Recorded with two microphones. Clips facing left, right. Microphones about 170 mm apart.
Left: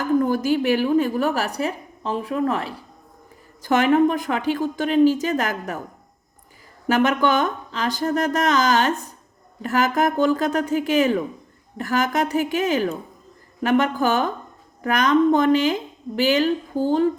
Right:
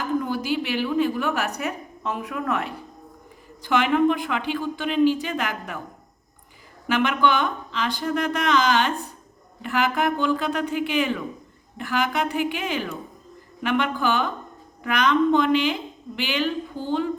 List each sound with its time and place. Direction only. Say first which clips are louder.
0.2 s a woman's voice: left 6 dB; 45° left (ahead or behind); by 2.7 s 30° left (ahead or behind)
3.6 s a woman's voice: left 3 dB; 45° left (ahead or behind)
6.8 s a woman's voice: left 3 dB; 40° left (ahead or behind)